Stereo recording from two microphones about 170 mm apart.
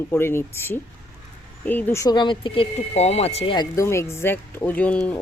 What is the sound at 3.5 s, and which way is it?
Speech, 20° left (ahead or behind).